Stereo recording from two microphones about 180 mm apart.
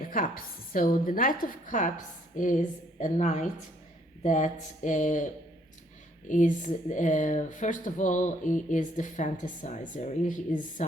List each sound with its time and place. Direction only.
0.0 s a woman's voice: 50° left (ahead or behind)